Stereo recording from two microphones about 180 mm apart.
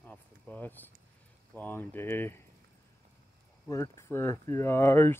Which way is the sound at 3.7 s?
15° left (ahead or behind).